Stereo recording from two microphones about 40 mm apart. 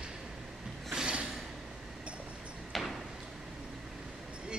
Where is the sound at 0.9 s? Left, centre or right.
Right.